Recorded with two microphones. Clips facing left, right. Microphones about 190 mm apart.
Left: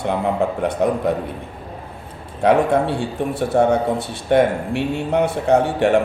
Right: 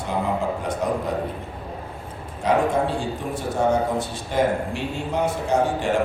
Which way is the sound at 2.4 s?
65° left (ahead or behind).